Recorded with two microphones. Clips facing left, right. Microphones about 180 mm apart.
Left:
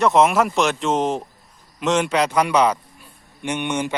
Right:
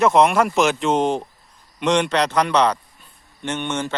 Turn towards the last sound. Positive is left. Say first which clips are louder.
# left 1 dB
turn(degrees=15)  # may be behind; listen again after turning